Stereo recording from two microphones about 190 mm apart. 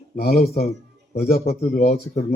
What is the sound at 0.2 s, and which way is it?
Speech, 55° left (ahead or behind).